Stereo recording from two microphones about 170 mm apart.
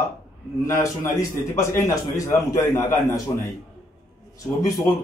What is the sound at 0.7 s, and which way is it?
A man's voice, 15° left (ahead or behind).